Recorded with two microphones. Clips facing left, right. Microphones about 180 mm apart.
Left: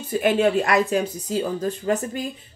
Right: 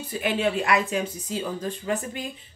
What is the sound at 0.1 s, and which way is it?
Speech, 45° left (ahead or behind).